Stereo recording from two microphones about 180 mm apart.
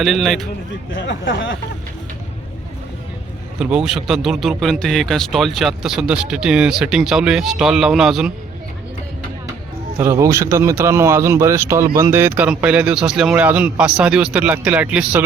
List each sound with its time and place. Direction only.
0.0 s speech: centre (ahead or behind)
0.9 s speech: 90° left
3.6 s speech: 5° right (ahead or behind)
10.0 s a man's voice: 15° right (ahead or behind)